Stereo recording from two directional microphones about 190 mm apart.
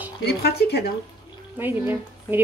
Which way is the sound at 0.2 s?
60° left (ahead or behind).